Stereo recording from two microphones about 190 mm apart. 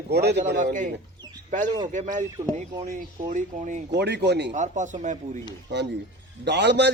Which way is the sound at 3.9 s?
60° right (ahead or behind).